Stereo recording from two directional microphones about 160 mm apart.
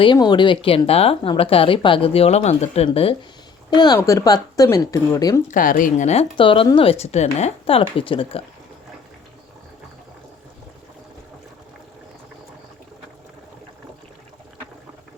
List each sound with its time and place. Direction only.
0.0 s a woman's voice: 30° left (ahead or behind)
3.7 s speech: 25° left (ahead or behind)
5.5 s speech: 55° left (ahead or behind)
6.3 s a woman's voice: 30° left (ahead or behind)